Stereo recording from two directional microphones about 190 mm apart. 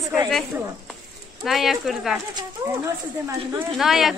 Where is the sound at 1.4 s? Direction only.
Centre (ahead or behind).